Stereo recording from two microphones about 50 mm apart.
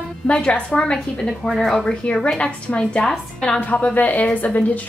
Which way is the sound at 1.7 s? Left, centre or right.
Left.